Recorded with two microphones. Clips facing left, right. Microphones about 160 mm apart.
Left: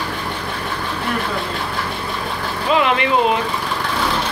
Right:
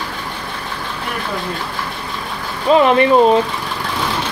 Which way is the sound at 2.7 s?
40° right (ahead or behind).